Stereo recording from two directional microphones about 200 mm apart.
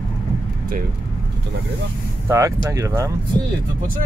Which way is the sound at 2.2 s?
15° right (ahead or behind).